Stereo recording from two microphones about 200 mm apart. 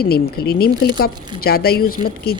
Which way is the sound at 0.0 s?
50° left (ahead or behind).